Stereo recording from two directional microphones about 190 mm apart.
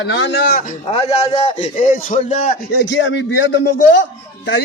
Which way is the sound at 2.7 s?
70° left (ahead or behind).